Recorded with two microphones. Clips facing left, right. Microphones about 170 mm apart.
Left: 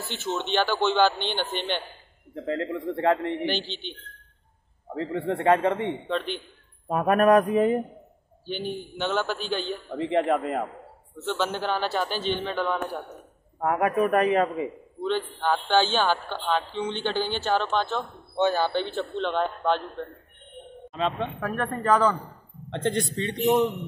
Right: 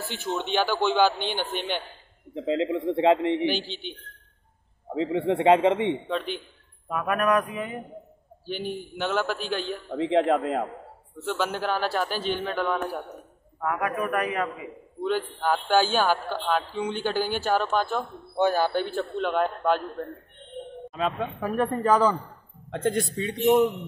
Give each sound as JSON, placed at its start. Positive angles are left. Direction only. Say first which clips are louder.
{"t": 0.1, "sound": "a man's voice", "louder": "left 1 dB", "side_deg": -10}
{"t": 2.3, "sound": "a man's voice", "louder": "right 3 dB", "side_deg": -15}
{"t": 4.9, "sound": "a man's voice", "louder": "right 3 dB", "side_deg": -20}
{"t": 6.0, "sound": "a man's voice", "louder": "left 1 dB", "side_deg": -5}
{"t": 6.9, "sound": "mantra", "louder": "left 5 dB", "side_deg": 40}
{"t": 8.5, "sound": "a man's voice", "louder": "even", "side_deg": 0}
{"t": 13.6, "sound": "a man's voice", "louder": "left 5 dB", "side_deg": 30}
{"t": 15.0, "sound": "a man's voice", "louder": "right 1 dB", "side_deg": -5}